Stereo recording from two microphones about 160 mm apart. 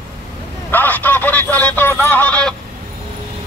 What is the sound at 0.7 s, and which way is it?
Telephone, 10° left (ahead or behind).